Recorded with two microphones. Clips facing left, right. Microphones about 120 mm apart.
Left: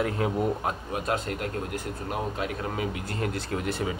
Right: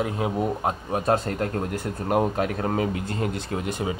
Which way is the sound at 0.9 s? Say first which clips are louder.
Right 8 dB; 35° right (ahead or behind).